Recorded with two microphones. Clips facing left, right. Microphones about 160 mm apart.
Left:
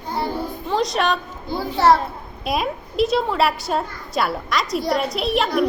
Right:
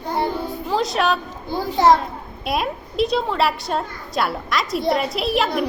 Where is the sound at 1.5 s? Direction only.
15° right (ahead or behind).